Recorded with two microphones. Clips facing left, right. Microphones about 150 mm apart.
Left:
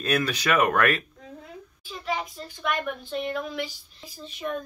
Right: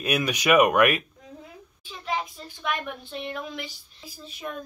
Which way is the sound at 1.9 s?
Centre (ahead or behind).